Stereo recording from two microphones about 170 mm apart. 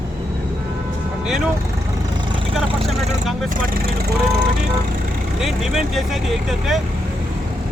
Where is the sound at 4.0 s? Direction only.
70° right (ahead or behind).